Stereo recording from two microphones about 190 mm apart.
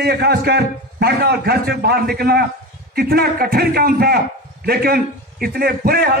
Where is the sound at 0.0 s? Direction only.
60° right (ahead or behind).